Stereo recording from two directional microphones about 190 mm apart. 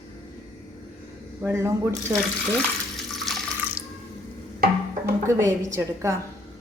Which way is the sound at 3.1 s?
Centre (ahead or behind).